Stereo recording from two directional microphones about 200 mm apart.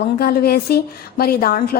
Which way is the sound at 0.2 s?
50° left (ahead or behind).